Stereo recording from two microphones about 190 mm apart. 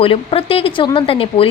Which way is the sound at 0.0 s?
30° left (ahead or behind).